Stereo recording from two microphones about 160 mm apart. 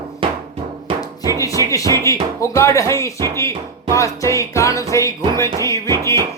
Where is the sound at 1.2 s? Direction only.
20° left (ahead or behind).